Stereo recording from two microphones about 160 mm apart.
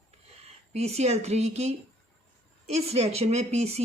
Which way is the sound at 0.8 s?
40° right (ahead or behind).